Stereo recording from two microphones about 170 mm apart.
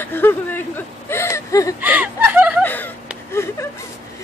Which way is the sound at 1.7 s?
10° right (ahead or behind).